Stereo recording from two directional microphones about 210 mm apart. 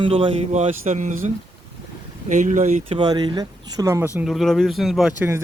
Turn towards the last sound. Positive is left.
turn(degrees=0)  # may be behind; listen again after turning